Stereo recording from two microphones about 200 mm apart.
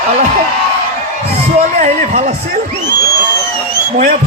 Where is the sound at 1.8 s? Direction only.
35° right (ahead or behind).